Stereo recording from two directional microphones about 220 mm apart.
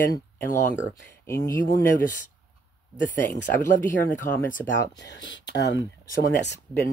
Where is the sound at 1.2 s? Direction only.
10° left (ahead or behind).